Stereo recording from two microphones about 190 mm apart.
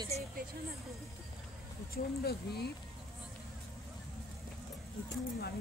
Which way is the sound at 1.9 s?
55° left (ahead or behind).